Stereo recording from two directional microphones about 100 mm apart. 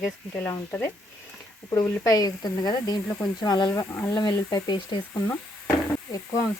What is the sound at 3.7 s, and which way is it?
Speech, 30° left (ahead or behind).